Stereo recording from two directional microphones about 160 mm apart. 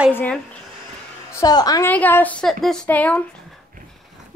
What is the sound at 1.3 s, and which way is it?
Speech, 25° left (ahead or behind).